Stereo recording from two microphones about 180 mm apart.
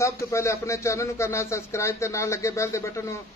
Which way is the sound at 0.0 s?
15° left (ahead or behind).